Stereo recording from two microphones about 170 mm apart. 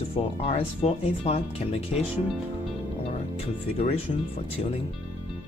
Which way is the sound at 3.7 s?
35° left (ahead or behind).